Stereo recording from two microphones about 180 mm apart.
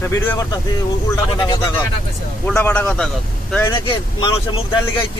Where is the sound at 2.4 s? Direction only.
10° left (ahead or behind).